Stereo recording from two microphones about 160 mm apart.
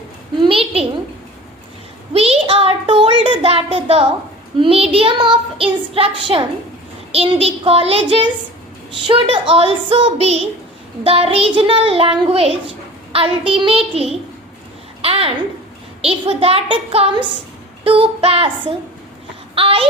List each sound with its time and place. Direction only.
0.4 s a child's voice: 35° right (ahead or behind)
2.1 s child singing: 40° right (ahead or behind)
15.0 s a child's voice: 40° right (ahead or behind)
16.0 s child singing: 35° right (ahead or behind)
19.5 s child singing: 35° right (ahead or behind)